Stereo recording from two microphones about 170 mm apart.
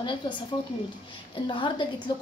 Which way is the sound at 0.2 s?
25° left (ahead or behind).